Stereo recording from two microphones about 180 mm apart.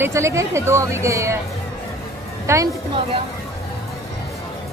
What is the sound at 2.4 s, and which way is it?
Speech, 15° right (ahead or behind).